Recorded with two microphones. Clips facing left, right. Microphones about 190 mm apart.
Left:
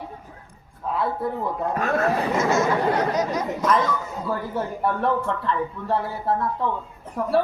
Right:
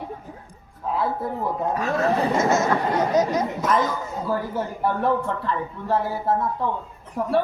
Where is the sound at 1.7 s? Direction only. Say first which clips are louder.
Left 3 dB; 55° left (ahead or behind).